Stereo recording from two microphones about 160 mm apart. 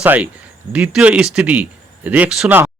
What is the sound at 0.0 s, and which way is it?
Speech, 10° right (ahead or behind).